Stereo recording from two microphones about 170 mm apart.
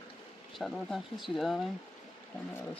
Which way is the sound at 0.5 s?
Centre (ahead or behind).